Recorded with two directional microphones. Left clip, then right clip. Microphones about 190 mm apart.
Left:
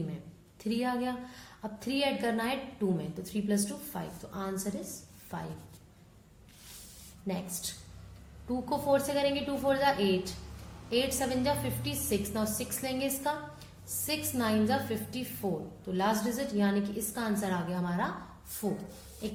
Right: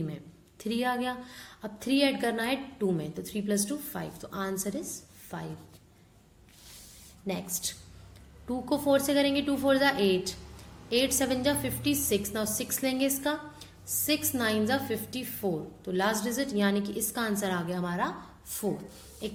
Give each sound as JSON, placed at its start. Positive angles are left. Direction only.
{"t": 0.6, "sound": "a woman's voice", "side_deg": -35}
{"t": 7.3, "sound": "a woman's voice", "side_deg": -30}